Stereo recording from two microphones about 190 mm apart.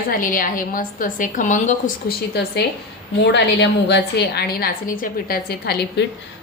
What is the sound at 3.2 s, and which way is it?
A woman's voice, 65° left (ahead or behind).